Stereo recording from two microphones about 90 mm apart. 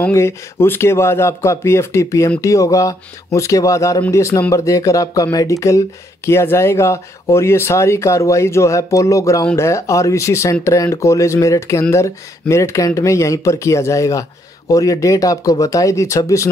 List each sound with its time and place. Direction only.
0.1 s speech: 30° left (ahead or behind)